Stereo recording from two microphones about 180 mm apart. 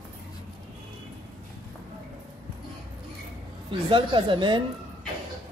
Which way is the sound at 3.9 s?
25° right (ahead or behind).